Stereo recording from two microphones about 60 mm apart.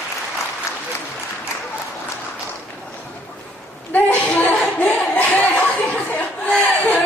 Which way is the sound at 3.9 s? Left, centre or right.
Left.